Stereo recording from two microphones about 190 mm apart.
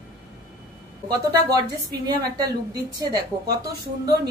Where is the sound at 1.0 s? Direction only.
20° right (ahead or behind).